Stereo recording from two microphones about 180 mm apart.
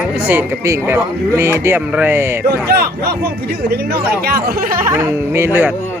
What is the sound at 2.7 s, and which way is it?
Speech, 60° right (ahead or behind).